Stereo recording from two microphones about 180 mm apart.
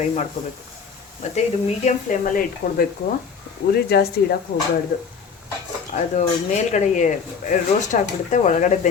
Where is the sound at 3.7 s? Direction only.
60° left (ahead or behind).